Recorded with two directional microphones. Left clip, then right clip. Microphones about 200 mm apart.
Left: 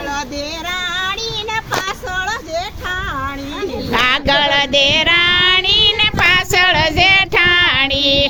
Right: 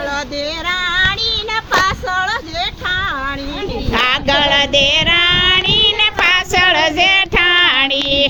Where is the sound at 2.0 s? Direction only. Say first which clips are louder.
Right 3 dB; 40° left (ahead or behind).